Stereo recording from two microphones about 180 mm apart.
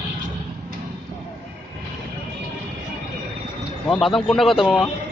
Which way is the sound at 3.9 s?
Centre (ahead or behind).